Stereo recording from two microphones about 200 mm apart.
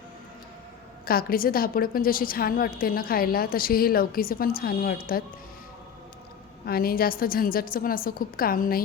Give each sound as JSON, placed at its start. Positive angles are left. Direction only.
{"t": 1.0, "sound": "a woman's voice", "side_deg": 45}
{"t": 6.7, "sound": "a woman's voice", "side_deg": 50}